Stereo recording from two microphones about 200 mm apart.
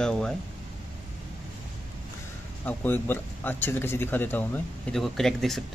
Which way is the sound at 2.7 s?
10° left (ahead or behind).